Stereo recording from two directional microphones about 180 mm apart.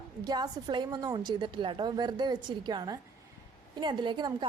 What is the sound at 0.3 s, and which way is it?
A woman's voice, 20° right (ahead or behind).